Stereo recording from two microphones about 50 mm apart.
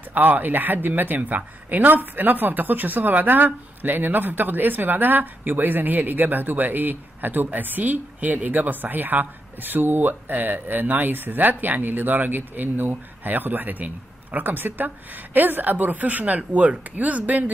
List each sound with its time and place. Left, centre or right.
0.1 s speech: right